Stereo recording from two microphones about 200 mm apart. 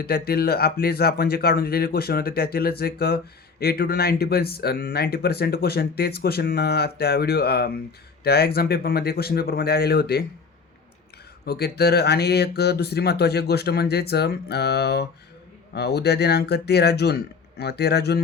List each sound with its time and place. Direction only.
0.0 s speech: 50° left (ahead or behind)
11.4 s speech: 50° left (ahead or behind)